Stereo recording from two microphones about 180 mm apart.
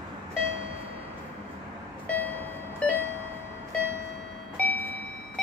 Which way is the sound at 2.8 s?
5° left (ahead or behind).